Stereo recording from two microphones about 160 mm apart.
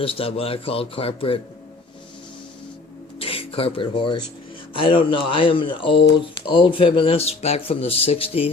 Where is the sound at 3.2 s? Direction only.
35° left (ahead or behind).